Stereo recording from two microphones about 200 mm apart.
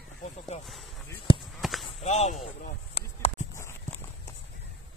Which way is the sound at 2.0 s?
35° left (ahead or behind).